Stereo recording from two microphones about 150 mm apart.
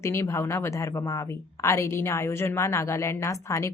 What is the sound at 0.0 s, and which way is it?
A woman's voice, 20° left (ahead or behind).